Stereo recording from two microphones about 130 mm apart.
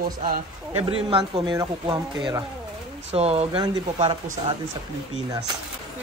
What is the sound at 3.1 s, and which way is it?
Speech, 55° right (ahead or behind).